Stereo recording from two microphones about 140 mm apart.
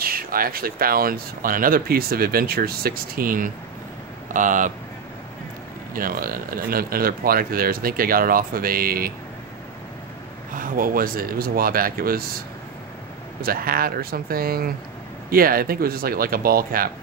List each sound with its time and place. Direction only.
0.0 s speech: 90° right
4.3 s speech: 70° right (ahead or behind)
5.9 s speech: 90° right
10.5 s speech: 85° right